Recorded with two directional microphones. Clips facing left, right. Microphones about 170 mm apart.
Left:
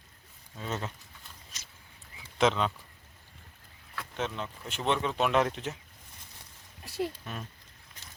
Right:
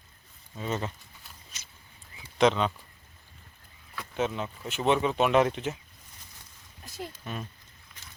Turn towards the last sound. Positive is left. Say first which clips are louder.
# right 3 dB
turn(degrees=0)  # may be behind; listen again after turning